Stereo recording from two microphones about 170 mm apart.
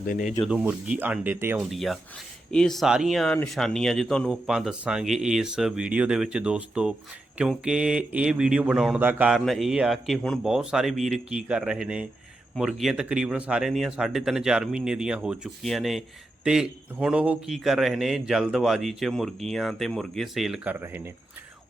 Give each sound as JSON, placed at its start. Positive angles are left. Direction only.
{"t": 0.1, "sound": "speech", "side_deg": 50}
{"t": 0.4, "sound": "speech", "side_deg": -5}
{"t": 1.7, "sound": "speech", "side_deg": 0}